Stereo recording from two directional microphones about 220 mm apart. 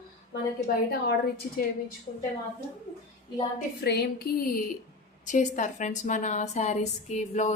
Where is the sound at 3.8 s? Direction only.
45° left (ahead or behind).